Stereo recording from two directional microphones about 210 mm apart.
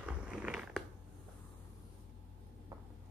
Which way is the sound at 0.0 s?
5° right (ahead or behind).